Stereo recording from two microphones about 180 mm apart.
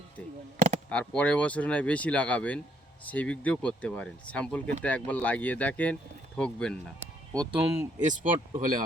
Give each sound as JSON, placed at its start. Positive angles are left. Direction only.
{"t": 0.9, "sound": "speech", "side_deg": 5}
{"t": 7.5, "sound": "speech", "side_deg": -5}
{"t": 8.0, "sound": "speech", "side_deg": -45}